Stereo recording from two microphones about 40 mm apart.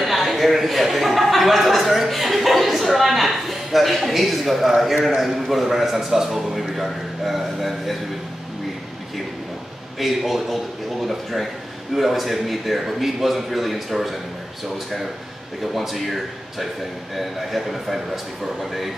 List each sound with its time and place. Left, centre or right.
0.0 s a sound: centre
5.5 s a man's voice: centre
9.9 s a man's voice: centre
15.6 s a man's voice: centre